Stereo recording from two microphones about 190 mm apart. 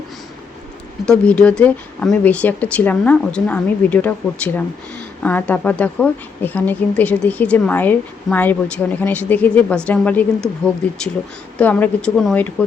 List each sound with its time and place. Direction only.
1.0 s speech: 5° left (ahead or behind)
11.5 s speech: 10° left (ahead or behind)